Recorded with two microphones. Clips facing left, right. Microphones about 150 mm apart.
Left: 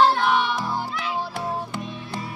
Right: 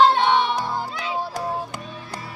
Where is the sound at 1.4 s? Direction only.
40° right (ahead or behind).